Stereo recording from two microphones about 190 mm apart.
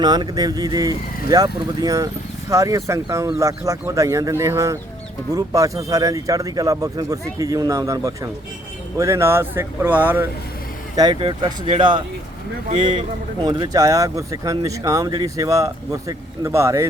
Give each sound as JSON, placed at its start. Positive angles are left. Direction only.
{"t": 0.0, "sound": "speech", "side_deg": -20}
{"t": 10.9, "sound": "speech", "side_deg": -25}